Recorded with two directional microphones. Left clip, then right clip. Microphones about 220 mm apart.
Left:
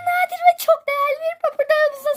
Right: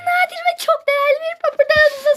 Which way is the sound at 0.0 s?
30° left (ahead or behind).